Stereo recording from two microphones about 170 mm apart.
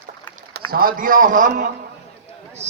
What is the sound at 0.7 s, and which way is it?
A man's voice, 60° right (ahead or behind).